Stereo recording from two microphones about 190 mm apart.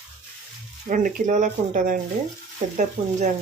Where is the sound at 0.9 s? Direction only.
45° right (ahead or behind).